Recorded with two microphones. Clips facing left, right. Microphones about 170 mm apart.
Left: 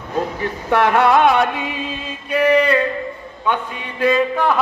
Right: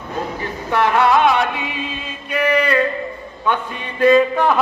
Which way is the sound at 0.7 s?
55° left (ahead or behind).